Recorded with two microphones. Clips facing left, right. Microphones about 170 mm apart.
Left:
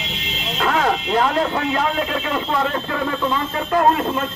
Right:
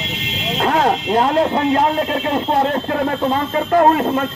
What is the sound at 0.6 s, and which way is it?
Speech, 40° right (ahead or behind).